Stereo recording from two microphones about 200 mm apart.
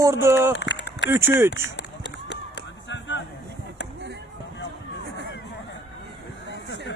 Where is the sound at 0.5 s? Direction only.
65° left (ahead or behind).